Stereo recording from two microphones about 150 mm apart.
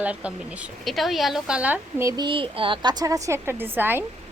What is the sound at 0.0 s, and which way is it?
Speech, 10° right (ahead or behind).